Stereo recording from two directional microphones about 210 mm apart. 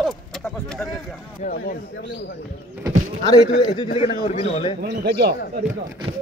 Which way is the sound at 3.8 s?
25° left (ahead or behind).